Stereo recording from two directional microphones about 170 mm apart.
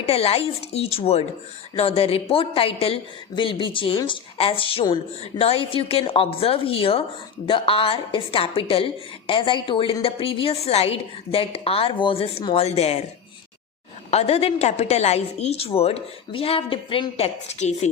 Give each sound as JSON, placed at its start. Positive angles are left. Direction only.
{"t": 0.0, "sound": "a woman's voice", "side_deg": 35}
{"t": 14.1, "sound": "a woman's voice", "side_deg": 40}